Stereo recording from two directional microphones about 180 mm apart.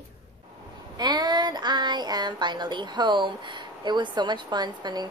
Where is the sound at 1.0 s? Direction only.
25° right (ahead or behind).